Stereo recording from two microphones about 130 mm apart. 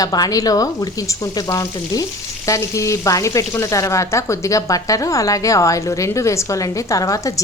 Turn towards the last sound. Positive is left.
turn(degrees=25)  # may be behind; listen again after turning